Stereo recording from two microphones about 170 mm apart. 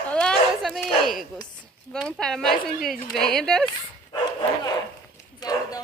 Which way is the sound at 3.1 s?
5° left (ahead or behind).